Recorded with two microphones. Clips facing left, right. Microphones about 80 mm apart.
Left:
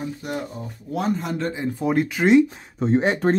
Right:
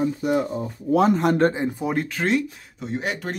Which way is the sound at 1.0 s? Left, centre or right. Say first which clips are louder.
Right 6 dB; right.